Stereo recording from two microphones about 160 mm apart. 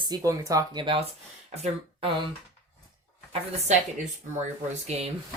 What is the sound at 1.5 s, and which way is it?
Speech, 45° right (ahead or behind).